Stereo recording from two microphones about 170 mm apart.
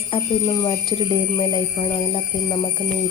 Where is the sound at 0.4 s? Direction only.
20° left (ahead or behind).